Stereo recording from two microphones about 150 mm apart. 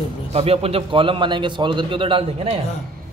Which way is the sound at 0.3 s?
40° right (ahead or behind).